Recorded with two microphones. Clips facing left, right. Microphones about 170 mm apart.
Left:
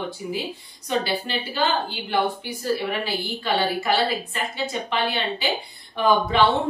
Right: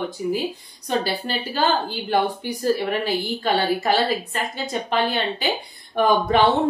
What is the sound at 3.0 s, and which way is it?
Speech, 45° right (ahead or behind).